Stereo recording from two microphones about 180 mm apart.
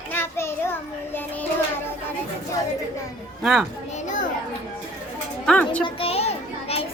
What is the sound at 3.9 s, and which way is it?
Speech, 40° left (ahead or behind).